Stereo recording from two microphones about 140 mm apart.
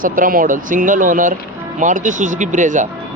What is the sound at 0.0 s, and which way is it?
Speech, 80° right.